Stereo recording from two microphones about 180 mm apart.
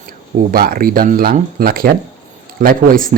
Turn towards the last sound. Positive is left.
turn(degrees=-50)  # may be behind; listen again after turning